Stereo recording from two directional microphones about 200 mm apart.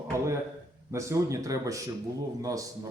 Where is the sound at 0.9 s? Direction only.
15° right (ahead or behind).